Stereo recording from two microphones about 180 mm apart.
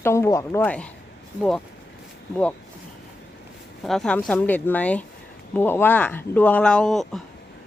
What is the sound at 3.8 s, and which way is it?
Speech, 5° left (ahead or behind).